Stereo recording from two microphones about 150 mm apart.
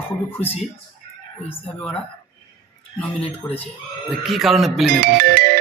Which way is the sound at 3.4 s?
15° left (ahead or behind).